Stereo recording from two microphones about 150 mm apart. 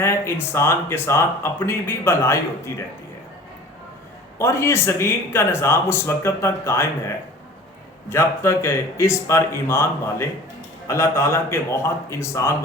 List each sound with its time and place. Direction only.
0.0 s a man's voice: 15° left (ahead or behind)
4.4 s a man's voice: 20° left (ahead or behind)
8.1 s a man's voice: 15° left (ahead or behind)